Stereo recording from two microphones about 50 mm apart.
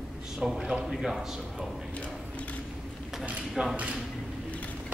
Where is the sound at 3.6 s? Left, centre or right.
Centre.